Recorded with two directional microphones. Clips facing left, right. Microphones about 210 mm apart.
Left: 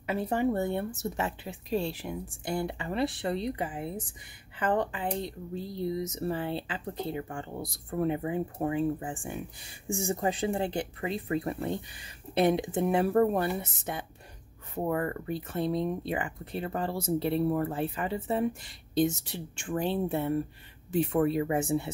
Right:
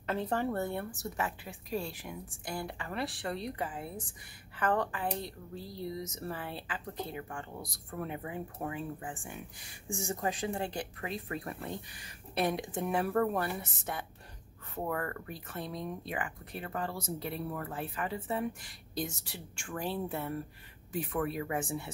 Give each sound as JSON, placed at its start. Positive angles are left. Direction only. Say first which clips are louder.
{"t": 0.0, "sound": "speech", "louder": "left 4 dB", "side_deg": 10}